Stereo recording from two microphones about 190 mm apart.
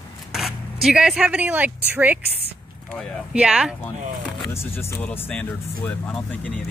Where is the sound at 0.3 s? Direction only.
Centre (ahead or behind).